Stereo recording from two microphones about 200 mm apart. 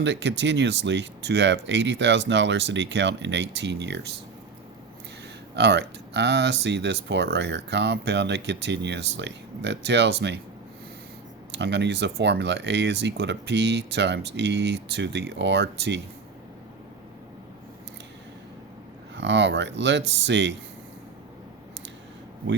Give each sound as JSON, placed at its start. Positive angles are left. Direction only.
{"t": 0.0, "sound": "speech", "side_deg": -65}
{"t": 5.5, "sound": "speech", "side_deg": -60}
{"t": 11.5, "sound": "speech", "side_deg": -60}
{"t": 19.1, "sound": "speech", "side_deg": -60}